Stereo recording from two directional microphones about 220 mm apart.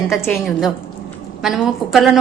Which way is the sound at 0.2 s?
Centre (ahead or behind).